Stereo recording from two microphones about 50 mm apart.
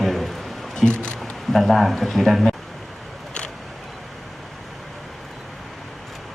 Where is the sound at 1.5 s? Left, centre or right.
Centre.